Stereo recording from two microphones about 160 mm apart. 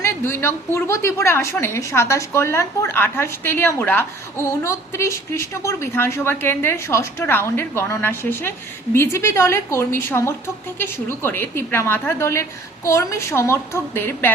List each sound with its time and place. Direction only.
0.0 s a woman's voice: 15° left (ahead or behind)